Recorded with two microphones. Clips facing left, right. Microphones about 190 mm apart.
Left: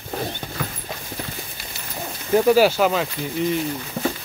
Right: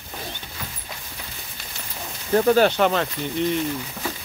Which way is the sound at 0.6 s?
60° left (ahead or behind).